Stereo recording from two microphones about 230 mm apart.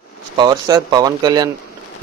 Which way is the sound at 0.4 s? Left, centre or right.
Centre.